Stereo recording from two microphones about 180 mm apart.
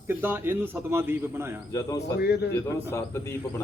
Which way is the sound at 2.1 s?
65° left (ahead or behind).